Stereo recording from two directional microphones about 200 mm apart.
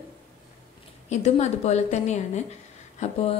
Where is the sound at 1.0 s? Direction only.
35° left (ahead or behind).